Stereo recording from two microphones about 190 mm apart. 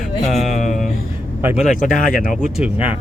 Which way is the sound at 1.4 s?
5° right (ahead or behind).